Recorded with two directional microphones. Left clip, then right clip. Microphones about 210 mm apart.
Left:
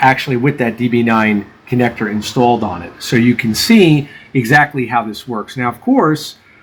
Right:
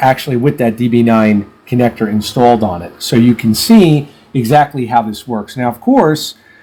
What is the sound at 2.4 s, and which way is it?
Speech, 20° right (ahead or behind).